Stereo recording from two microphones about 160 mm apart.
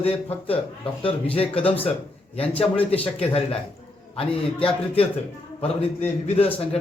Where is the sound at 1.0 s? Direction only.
35° left (ahead or behind).